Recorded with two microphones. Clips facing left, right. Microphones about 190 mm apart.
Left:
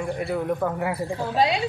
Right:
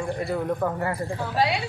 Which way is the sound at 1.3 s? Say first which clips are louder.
Left 2 dB; 20° left (ahead or behind).